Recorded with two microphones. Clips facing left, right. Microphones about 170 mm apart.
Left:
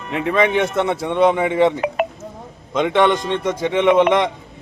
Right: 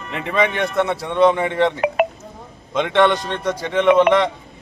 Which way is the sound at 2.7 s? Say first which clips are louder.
Even; 10° left (ahead or behind).